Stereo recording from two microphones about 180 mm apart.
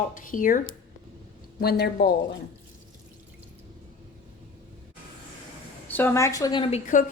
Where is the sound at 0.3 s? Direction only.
50° left (ahead or behind).